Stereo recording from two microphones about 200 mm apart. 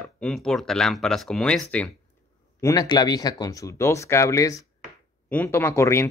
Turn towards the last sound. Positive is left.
turn(degrees=15)  # may be behind; listen again after turning